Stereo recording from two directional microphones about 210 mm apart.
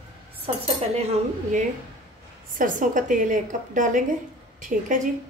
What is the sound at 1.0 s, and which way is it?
A woman's voice, 30° right (ahead or behind).